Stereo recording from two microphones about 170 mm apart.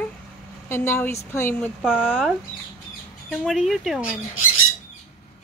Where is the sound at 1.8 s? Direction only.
5° right (ahead or behind).